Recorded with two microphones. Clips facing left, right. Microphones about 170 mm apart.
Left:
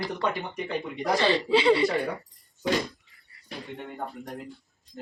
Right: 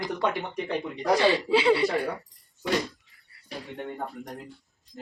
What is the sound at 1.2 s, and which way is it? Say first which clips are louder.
Speech: left 1 dB; 10° right (ahead or behind).